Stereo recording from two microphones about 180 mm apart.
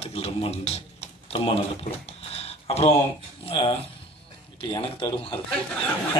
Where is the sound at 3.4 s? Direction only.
30° left (ahead or behind).